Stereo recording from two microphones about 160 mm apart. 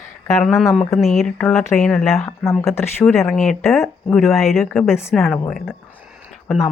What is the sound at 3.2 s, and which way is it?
Speech, 5° left (ahead or behind).